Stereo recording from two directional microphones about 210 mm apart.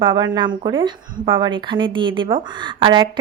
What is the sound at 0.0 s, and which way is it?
Speech, 20° right (ahead or behind).